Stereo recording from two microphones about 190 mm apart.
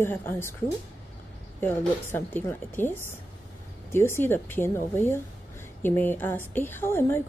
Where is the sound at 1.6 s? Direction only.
10° left (ahead or behind).